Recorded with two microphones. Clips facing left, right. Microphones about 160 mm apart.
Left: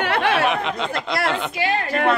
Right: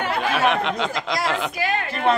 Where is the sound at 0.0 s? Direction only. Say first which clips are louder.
Left 3 dB; 70° left (ahead or behind).